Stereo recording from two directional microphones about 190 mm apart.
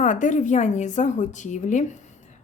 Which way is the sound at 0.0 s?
40° left (ahead or behind).